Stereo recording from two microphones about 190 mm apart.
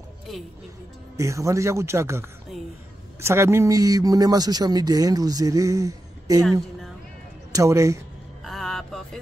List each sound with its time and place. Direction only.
0.3 s speech: centre (ahead or behind)
1.1 s speech: 15° right (ahead or behind)
7.5 s speech: 15° right (ahead or behind)
8.5 s vehicle: centre (ahead or behind)